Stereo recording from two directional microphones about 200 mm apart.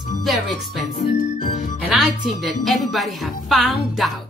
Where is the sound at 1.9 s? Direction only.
Centre (ahead or behind).